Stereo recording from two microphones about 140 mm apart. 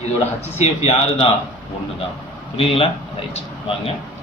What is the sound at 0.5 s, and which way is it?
Speech, 50° left (ahead or behind).